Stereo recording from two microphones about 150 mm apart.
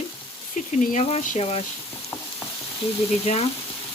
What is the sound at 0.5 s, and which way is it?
Speech, 60° left (ahead or behind).